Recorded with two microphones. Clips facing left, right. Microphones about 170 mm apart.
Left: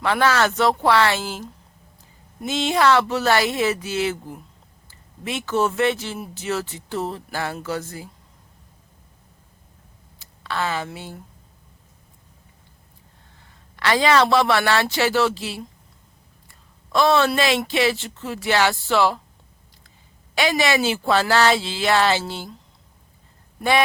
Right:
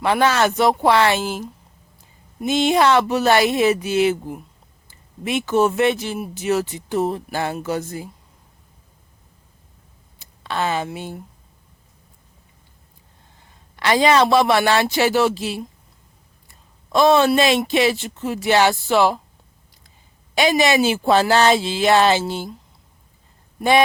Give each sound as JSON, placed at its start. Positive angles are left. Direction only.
{"t": 0.0, "sound": "speech", "side_deg": -15}
{"t": 4.9, "sound": "a sound", "side_deg": -15}
{"t": 5.5, "sound": "speech", "side_deg": -15}
{"t": 10.2, "sound": "speech", "side_deg": -20}
{"t": 13.7, "sound": "speech", "side_deg": -20}
{"t": 16.9, "sound": "speech", "side_deg": -20}
{"t": 20.3, "sound": "speech", "side_deg": -20}